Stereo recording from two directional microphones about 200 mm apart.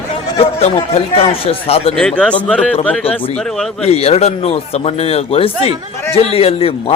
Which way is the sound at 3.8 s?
30° left (ahead or behind).